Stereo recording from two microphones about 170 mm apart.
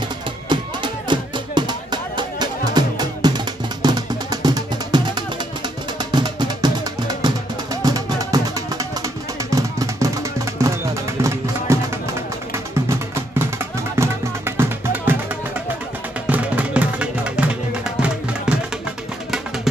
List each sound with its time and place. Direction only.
0.5 s music: 25° right (ahead or behind)
12.8 s music: 15° right (ahead or behind)
16.3 s music: 10° right (ahead or behind)